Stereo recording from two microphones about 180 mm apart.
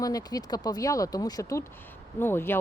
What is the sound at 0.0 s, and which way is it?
Speech, 20° left (ahead or behind).